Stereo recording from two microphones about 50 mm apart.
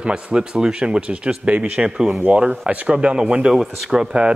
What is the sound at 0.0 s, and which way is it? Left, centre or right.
A man's voice, centre.